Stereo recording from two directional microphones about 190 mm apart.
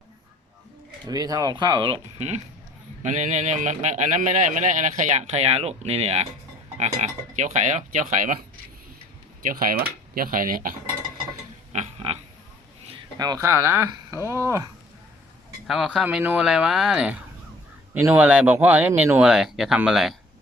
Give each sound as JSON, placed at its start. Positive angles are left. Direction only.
{"t": 1.0, "sound": "a man's voice", "side_deg": -20}
{"t": 9.5, "sound": "speech", "side_deg": -50}
{"t": 11.7, "sound": "music", "side_deg": -35}
{"t": 13.1, "sound": "speech", "side_deg": -20}
{"t": 15.6, "sound": "speech", "side_deg": 0}